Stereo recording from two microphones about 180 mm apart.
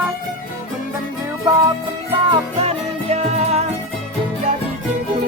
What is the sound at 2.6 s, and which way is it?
Music, 35° right (ahead or behind).